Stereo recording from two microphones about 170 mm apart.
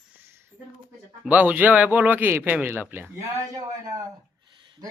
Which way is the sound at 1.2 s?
10° right (ahead or behind).